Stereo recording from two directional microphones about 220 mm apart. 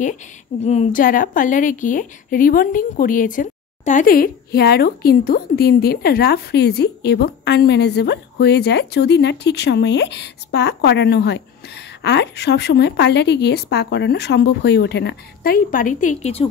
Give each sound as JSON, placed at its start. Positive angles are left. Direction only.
{"t": 0.7, "sound": "a woman's voice", "side_deg": 35}